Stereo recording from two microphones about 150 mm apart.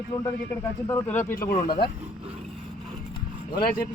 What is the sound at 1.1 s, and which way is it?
Speech, 10° left (ahead or behind).